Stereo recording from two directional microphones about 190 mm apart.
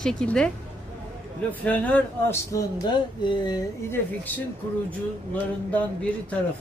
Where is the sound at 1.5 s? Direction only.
10° left (ahead or behind).